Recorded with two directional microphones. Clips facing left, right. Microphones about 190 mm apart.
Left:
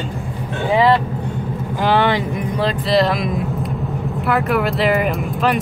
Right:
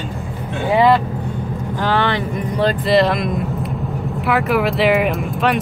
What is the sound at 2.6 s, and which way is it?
Speech, centre (ahead or behind).